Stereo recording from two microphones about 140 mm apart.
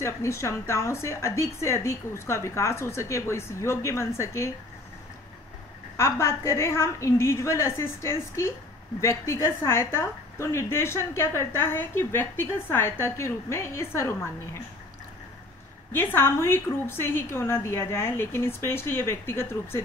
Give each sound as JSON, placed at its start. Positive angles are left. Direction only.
{"t": 0.0, "sound": "a woman's voice", "side_deg": 20}
{"t": 5.9, "sound": "a woman's voice", "side_deg": 20}
{"t": 15.9, "sound": "a woman's voice", "side_deg": 15}